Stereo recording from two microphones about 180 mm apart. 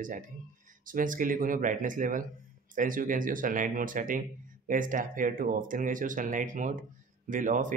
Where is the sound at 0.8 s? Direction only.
50° right (ahead or behind).